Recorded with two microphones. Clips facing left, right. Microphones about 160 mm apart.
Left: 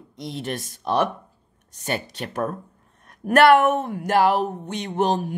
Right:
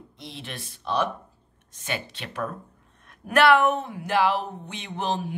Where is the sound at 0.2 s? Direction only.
45° left (ahead or behind).